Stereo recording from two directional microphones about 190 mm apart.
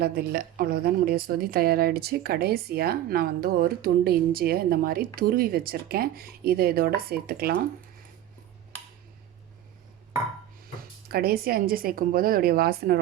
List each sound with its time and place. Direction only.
0.0 s a woman's voice: 55° right (ahead or behind)
11.1 s a woman's voice: 55° right (ahead or behind)